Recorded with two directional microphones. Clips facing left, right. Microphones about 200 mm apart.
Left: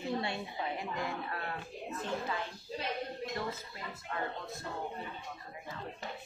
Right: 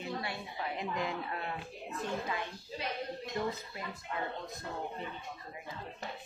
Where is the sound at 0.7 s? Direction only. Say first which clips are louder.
Right 2 dB; 20° right (ahead or behind).